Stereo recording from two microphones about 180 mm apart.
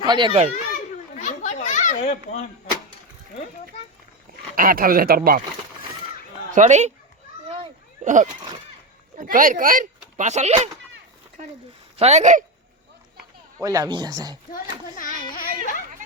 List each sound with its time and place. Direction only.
0.0 s a child's voice: 25° right (ahead or behind)
0.7 s children playing: 45° left (ahead or behind)
4.5 s speech: 55° right (ahead or behind)
6.5 s speech: 40° right (ahead or behind)
8.0 s speech: 45° right (ahead or behind)
11.9 s speech: 35° right (ahead or behind)
13.6 s speech: 20° right (ahead or behind)
14.5 s a child's voice: 50° left (ahead or behind)